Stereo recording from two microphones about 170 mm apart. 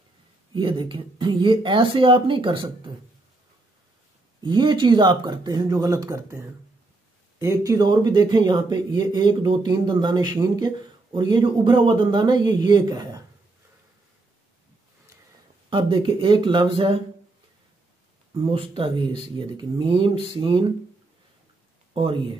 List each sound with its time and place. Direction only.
0.6 s speech: 30° right (ahead or behind)
4.4 s speech: 25° right (ahead or behind)
15.7 s speech: 30° right (ahead or behind)
18.3 s speech: 30° right (ahead or behind)
21.9 s speech: 30° right (ahead or behind)